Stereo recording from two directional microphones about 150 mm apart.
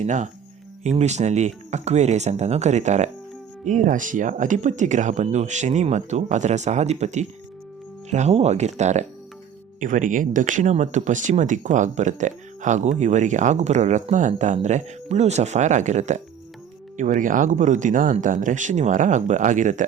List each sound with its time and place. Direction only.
0.0 s speech: 55° right (ahead or behind)